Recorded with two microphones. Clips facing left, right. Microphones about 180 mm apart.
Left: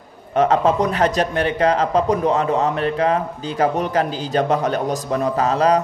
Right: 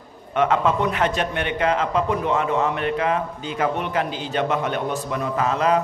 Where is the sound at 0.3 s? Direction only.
35° left (ahead or behind).